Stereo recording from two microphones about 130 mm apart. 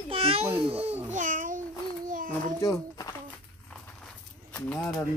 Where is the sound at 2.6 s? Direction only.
25° left (ahead or behind).